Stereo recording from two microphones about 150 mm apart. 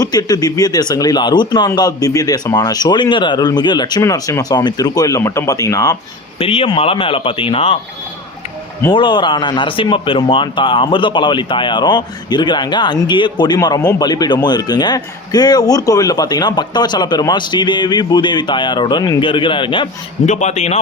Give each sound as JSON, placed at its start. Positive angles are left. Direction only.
{"t": 0.0, "sound": "speech", "side_deg": 25}
{"t": 6.4, "sound": "speech", "side_deg": 40}
{"t": 8.9, "sound": "speech", "side_deg": 30}
{"t": 20.2, "sound": "a man's voice", "side_deg": 50}